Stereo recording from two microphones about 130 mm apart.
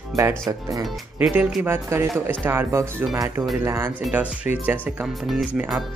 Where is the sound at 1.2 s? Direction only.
10° right (ahead or behind).